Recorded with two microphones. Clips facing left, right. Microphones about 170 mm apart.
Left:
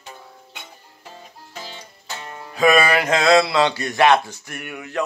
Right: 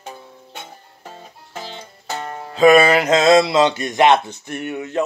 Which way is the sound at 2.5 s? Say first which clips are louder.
Right 5 dB; 25° right (ahead or behind).